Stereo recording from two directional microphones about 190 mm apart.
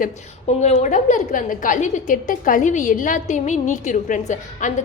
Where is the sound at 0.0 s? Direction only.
35° left (ahead or behind).